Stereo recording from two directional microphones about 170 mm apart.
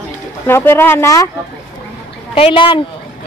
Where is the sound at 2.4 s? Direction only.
30° left (ahead or behind).